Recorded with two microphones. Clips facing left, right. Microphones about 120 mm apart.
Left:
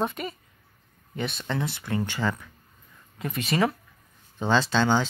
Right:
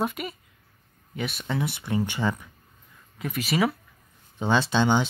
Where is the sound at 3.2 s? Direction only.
Centre (ahead or behind).